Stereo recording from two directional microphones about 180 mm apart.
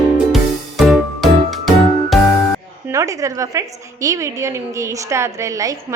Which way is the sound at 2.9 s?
15° right (ahead or behind).